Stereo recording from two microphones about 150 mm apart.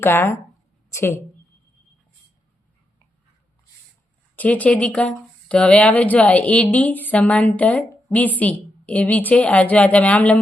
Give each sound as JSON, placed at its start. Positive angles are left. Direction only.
{"t": 0.0, "sound": "a woman's voice", "side_deg": 15}
{"t": 4.4, "sound": "speech", "side_deg": 10}